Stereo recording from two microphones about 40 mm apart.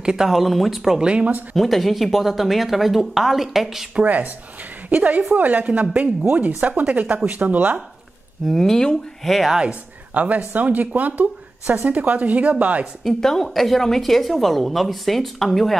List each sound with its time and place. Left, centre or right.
0.0 s speech: centre
0.3 s a woman's voice: centre
1.0 s speech: right
1.6 s a woman's voice: centre
4.0 s a woman's voice: right
8.5 s a woman's voice: centre
10.1 s speech: right
13.2 s a woman's voice: centre